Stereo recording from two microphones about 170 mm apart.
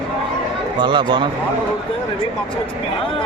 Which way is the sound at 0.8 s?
25° right (ahead or behind).